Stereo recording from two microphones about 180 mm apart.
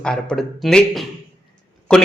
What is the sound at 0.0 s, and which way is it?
Speech, 5° left (ahead or behind).